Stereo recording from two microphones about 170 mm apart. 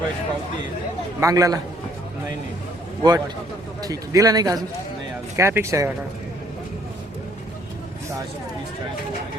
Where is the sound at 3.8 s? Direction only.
20° right (ahead or behind).